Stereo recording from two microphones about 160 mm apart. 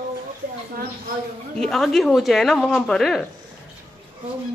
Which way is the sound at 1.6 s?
Centre (ahead or behind).